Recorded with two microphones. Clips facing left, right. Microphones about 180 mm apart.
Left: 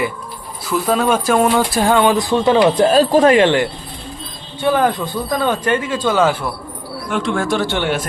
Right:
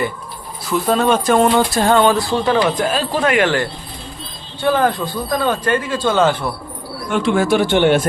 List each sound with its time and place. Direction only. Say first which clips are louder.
0.7 s speech: right 1 dB; 5° left (ahead or behind)
7.1 s speech: right 3 dB; centre (ahead or behind)
7.6 s a man's voice: right 6 dB; 20° right (ahead or behind)